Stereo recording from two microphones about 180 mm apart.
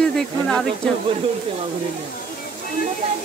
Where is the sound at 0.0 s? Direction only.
5° left (ahead or behind).